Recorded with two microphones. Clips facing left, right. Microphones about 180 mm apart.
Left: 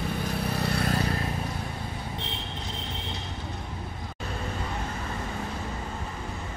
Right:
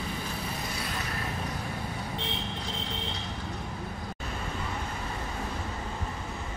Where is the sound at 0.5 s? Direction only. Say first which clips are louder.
Left 8 dB; 65° left (ahead or behind).